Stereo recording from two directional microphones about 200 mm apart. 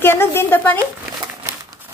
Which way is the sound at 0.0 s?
10° left (ahead or behind).